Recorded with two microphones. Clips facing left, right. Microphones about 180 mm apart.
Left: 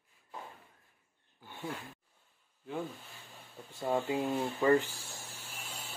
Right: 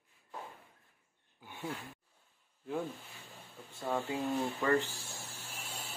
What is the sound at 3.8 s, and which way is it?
Speech, 20° left (ahead or behind).